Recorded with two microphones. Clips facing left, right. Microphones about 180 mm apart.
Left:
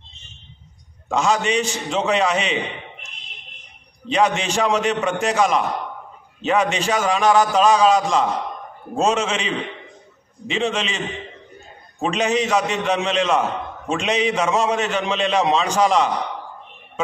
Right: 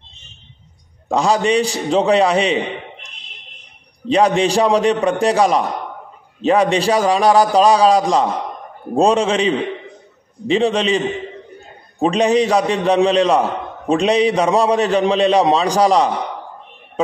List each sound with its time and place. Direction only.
1.0 s a man's voice: 35° right (ahead or behind)
4.1 s a man's voice: 35° right (ahead or behind)
12.0 s a man's voice: 35° right (ahead or behind)